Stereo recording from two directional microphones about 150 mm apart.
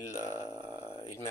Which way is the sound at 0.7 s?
40° left (ahead or behind).